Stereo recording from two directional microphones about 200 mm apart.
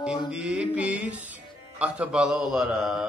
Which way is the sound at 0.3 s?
5° right (ahead or behind).